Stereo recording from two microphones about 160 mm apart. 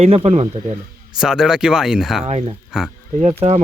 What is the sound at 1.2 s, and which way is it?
Speech, 5° right (ahead or behind).